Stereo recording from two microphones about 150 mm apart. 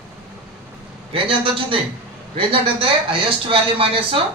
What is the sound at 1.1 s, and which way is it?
A man's voice, 35° right (ahead or behind).